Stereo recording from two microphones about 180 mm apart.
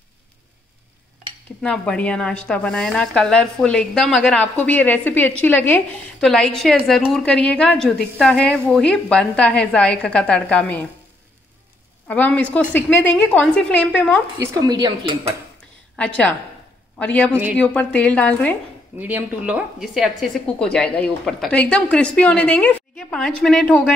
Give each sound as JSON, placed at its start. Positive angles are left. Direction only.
{"t": 1.6, "sound": "a woman's voice", "side_deg": 5}
{"t": 12.1, "sound": "a woman's voice", "side_deg": 5}
{"t": 14.4, "sound": "dishes", "side_deg": -20}
{"t": 16.0, "sound": "a woman's voice", "side_deg": 5}
{"t": 18.9, "sound": "a woman's voice", "side_deg": -10}